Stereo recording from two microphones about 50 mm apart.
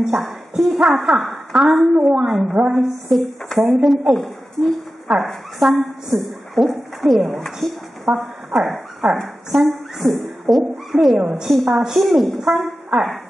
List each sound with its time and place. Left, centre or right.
0.0 s a woman's voice: centre
6.1 s a woman's voice: right
6.5 s a woman's voice: centre
8.1 s speech: right
8.5 s a woman's voice: centre
11.2 s speech: centre
12.0 s a woman's voice: centre